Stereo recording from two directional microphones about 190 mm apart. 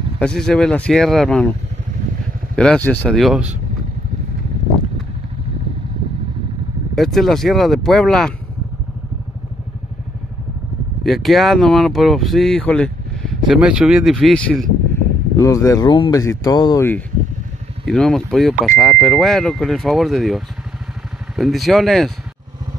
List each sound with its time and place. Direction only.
0.2 s speech: 5° left (ahead or behind)
2.5 s speech: 5° left (ahead or behind)
7.0 s speech: centre (ahead or behind)
11.1 s speech: centre (ahead or behind)
15.0 s speech: 15° left (ahead or behind)
17.8 s speech: 5° left (ahead or behind)